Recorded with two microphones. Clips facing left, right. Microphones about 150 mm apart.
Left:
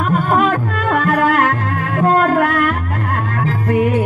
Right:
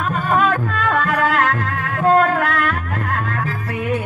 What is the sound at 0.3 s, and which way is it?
Music, 40° left (ahead or behind).